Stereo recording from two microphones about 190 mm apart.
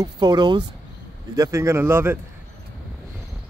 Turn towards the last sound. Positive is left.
turn(degrees=-10)  # may be behind; listen again after turning